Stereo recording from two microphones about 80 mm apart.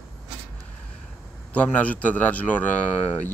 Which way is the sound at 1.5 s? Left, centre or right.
Centre.